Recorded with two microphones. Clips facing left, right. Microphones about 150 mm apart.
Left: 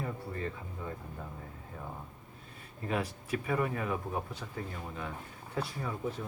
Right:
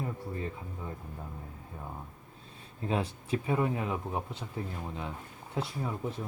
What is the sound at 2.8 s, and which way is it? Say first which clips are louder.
Speech: right 2 dB; 25° right (ahead or behind).